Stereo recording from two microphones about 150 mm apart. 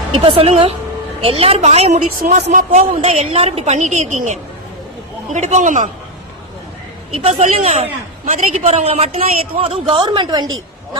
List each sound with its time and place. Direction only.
0.1 s a woman's voice: 40° right (ahead or behind)
2.2 s speech: 60° right (ahead or behind)
3.0 s a woman's voice: 40° right (ahead or behind); by 5.9 s 55° right (ahead or behind)
7.1 s a woman's voice: 40° right (ahead or behind)